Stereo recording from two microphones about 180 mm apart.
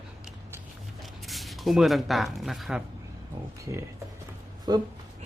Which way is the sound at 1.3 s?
Centre (ahead or behind).